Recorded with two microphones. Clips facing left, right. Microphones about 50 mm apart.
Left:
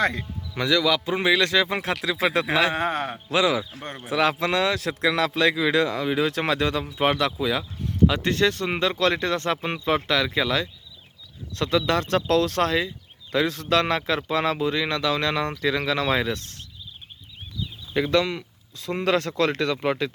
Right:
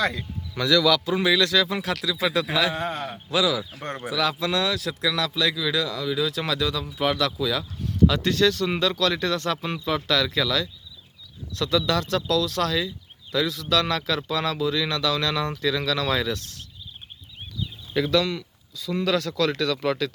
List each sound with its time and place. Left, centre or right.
0.0 s speech: left
17.9 s speech: left
18.9 s speech: left